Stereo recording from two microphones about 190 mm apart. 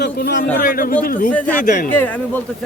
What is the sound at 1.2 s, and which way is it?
Speech, 10° left (ahead or behind).